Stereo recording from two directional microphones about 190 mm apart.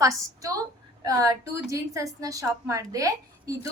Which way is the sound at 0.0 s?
15° right (ahead or behind).